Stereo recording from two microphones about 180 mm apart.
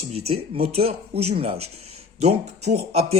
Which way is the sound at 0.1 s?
35° right (ahead or behind).